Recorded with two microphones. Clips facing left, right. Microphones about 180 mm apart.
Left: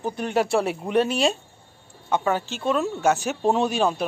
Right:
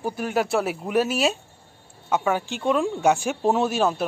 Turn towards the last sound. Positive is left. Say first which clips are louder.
# even
turn(degrees=-5)  # may be behind; listen again after turning